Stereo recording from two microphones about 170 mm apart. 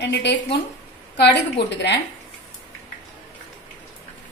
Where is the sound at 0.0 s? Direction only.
90° left.